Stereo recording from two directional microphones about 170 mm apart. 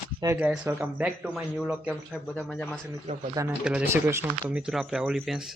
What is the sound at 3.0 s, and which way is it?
Speech, 45° right (ahead or behind).